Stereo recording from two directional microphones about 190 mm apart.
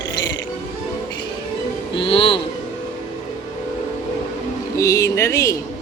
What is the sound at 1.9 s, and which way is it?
Music, 30° left (ahead or behind).